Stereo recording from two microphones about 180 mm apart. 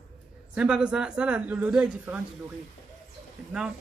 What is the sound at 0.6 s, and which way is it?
A woman's voice, 5° right (ahead or behind).